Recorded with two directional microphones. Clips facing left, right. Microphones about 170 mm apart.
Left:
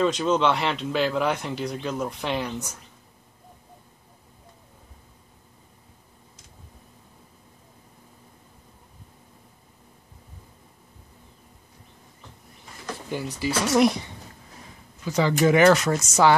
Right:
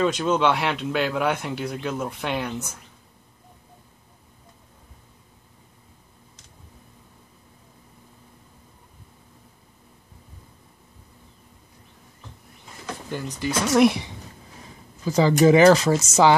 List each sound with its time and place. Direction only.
0.0 s speech: centre (ahead or behind)
13.1 s speech: 10° left (ahead or behind)
15.0 s speech: 35° right (ahead or behind)